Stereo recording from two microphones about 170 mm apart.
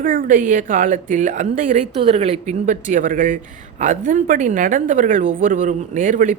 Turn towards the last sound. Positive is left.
turn(degrees=-50)  # may be behind; listen again after turning